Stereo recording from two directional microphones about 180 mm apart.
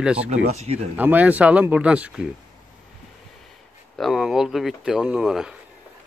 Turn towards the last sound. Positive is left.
turn(degrees=0)  # may be behind; listen again after turning